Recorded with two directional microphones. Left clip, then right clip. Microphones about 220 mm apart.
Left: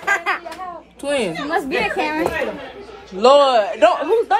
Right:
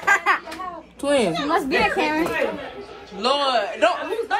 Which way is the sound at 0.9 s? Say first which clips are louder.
Right 1 dB; 10° right (ahead or behind).